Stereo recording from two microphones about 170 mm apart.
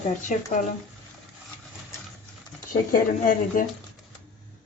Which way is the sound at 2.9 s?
55° left (ahead or behind).